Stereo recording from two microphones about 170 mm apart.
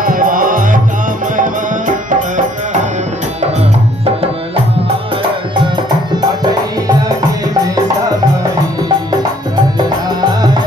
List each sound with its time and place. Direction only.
0.0 s music: 55° right (ahead or behind)